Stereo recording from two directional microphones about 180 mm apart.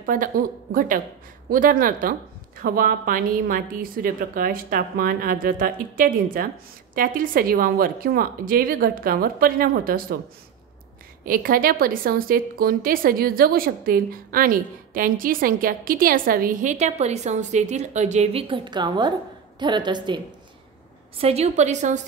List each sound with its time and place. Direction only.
0.0 s a woman's voice: 50° right (ahead or behind)
11.2 s a woman's voice: 50° right (ahead or behind); by 20.2 s 25° right (ahead or behind)
21.2 s a woman's voice: 35° right (ahead or behind)